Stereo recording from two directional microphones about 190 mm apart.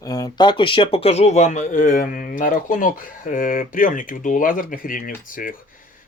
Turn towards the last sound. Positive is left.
turn(degrees=45)  # may be behind; listen again after turning